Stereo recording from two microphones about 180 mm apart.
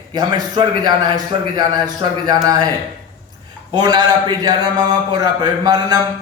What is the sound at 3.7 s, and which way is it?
A man's voice, 20° right (ahead or behind).